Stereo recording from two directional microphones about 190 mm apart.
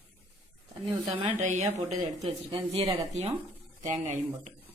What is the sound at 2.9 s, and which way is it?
Speech, 35° right (ahead or behind).